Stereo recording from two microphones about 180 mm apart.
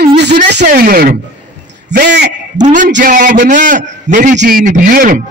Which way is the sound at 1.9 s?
65° right (ahead or behind).